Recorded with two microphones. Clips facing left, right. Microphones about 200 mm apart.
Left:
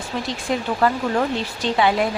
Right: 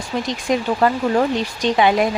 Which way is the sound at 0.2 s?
20° right (ahead or behind).